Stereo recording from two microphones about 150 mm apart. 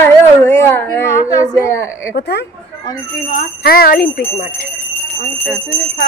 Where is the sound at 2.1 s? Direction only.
90° left.